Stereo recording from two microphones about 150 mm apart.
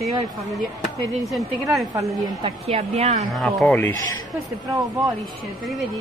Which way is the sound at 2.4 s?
45° right (ahead or behind).